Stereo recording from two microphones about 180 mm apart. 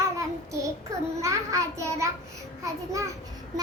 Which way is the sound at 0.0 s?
15° right (ahead or behind).